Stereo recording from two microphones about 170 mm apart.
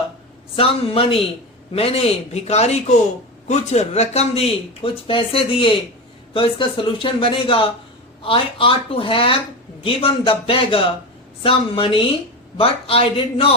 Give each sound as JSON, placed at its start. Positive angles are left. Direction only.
{"t": 0.5, "sound": "speech", "side_deg": 35}